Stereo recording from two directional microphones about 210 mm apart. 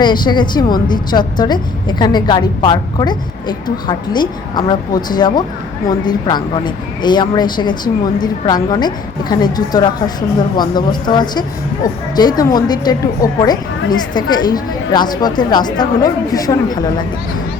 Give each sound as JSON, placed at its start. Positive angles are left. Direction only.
{"t": 0.0, "sound": "a woman's voice", "side_deg": 20}